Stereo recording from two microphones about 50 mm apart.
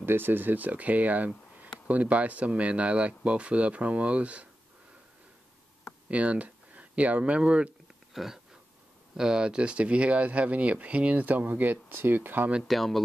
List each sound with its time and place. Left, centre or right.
0.0 s speech: right
6.0 s speech: right
8.1 s a sound: centre
9.1 s speech: centre; by 12.4 s right
12.6 s speech: centre